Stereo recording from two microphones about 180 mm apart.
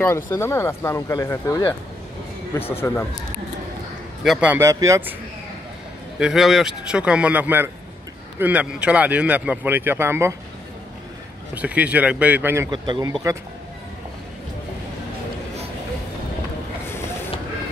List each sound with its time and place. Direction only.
0.0 s speech: 15° left (ahead or behind)
2.6 s speech: 15° left (ahead or behind)
4.2 s speech: 5° right (ahead or behind)
6.1 s speech: 5° right (ahead or behind)
11.5 s speech: 5° right (ahead or behind)
12.7 s speech: 25° right (ahead or behind)